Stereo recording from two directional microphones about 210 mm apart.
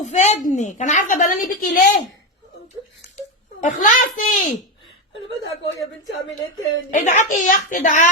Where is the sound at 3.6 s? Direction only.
35° left (ahead or behind).